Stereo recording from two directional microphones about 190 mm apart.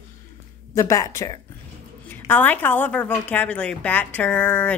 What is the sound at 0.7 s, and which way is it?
A woman's voice, 15° left (ahead or behind).